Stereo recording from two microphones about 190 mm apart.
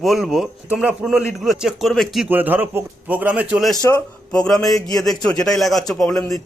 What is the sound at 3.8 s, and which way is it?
Speech, 15° left (ahead or behind).